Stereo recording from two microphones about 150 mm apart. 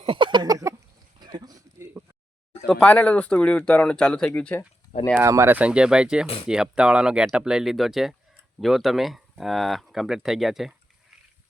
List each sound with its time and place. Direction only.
0.0 s a sound: 35° right (ahead or behind)
2.6 s speech: 10° left (ahead or behind)
5.1 s speech: 15° right (ahead or behind); by 10.8 s centre (ahead or behind)